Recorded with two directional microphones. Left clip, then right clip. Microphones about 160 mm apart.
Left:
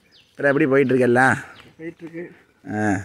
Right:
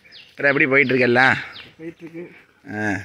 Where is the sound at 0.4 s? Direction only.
35° left (ahead or behind).